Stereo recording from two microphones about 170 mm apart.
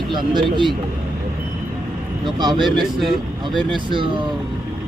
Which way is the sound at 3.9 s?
30° right (ahead or behind).